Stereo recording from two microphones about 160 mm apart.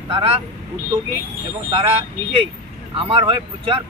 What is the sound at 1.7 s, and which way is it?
Speech, 35° right (ahead or behind).